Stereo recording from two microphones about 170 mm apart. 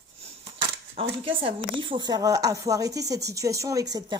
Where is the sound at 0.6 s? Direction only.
35° right (ahead or behind).